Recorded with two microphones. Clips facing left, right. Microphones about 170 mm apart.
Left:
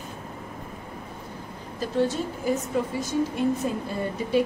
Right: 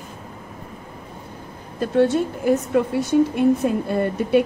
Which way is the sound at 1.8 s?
60° right (ahead or behind).